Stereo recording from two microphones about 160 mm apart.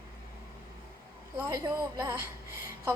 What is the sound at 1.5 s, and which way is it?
Speech, 20° right (ahead or behind).